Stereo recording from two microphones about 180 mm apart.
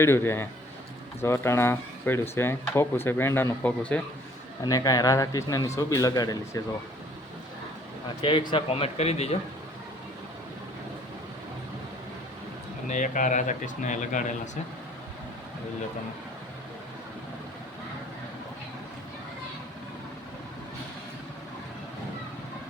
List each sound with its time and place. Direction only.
0.0 s speech: 15° left (ahead or behind)
4.6 s speech: 20° left (ahead or behind)
8.2 s speech: 25° left (ahead or behind)
12.9 s speech: 45° left (ahead or behind)